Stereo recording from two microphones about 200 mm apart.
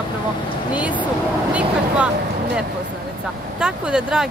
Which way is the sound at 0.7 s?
5° right (ahead or behind).